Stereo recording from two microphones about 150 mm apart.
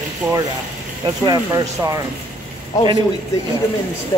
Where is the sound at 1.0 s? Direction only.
25° right (ahead or behind).